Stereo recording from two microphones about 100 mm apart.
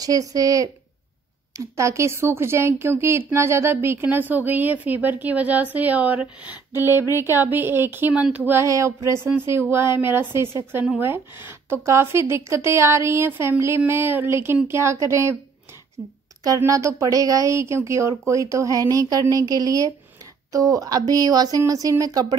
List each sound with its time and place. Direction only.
0.0 s speech: 35° right (ahead or behind)
1.8 s a woman's voice: 30° right (ahead or behind)
8.1 s speech: 10° right (ahead or behind)
8.5 s a woman's voice: 30° right (ahead or behind)
16.4 s speech: 30° right (ahead or behind)